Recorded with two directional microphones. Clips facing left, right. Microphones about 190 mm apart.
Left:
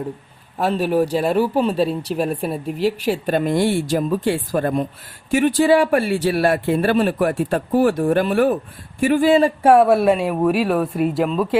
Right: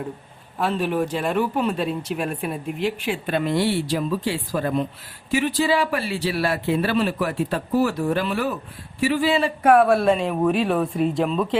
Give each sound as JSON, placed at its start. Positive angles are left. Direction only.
{"t": 0.6, "sound": "speech", "side_deg": 40}
{"t": 9.6, "sound": "speech", "side_deg": 25}
{"t": 10.0, "sound": "speech", "side_deg": 10}